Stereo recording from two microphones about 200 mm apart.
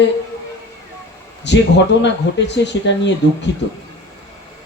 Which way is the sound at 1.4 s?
60° left (ahead or behind).